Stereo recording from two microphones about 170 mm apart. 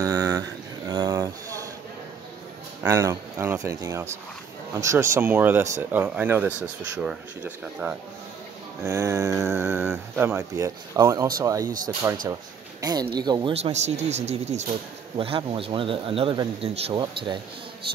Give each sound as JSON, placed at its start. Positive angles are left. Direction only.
{"t": 0.0, "sound": "mantra", "side_deg": -20}
{"t": 2.8, "sound": "speech", "side_deg": -20}